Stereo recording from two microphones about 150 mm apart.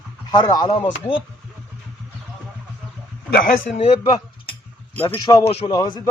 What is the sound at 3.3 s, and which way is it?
Speech, 65° left (ahead or behind).